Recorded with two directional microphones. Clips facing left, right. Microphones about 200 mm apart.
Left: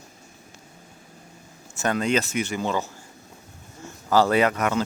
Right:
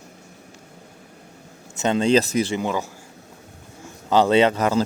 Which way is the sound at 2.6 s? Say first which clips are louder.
Right 1 dB; 10° right (ahead or behind).